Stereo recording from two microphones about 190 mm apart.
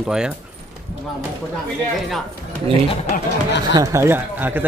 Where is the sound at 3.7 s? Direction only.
15° right (ahead or behind).